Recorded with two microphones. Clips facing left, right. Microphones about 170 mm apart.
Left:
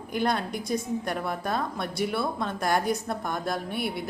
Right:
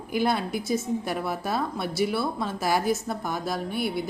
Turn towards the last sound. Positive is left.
turn(degrees=0)  # may be behind; listen again after turning